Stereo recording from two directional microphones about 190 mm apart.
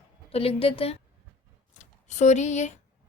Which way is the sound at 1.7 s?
40° left (ahead or behind).